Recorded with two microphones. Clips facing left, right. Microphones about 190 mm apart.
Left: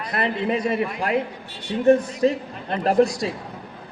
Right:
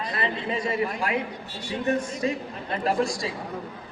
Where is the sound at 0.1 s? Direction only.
65° left (ahead or behind).